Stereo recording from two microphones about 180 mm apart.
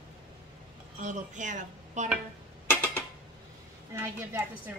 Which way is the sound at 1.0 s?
45° right (ahead or behind).